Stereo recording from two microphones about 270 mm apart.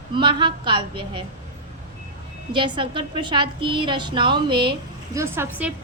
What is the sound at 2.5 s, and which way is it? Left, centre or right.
A woman's voice, centre.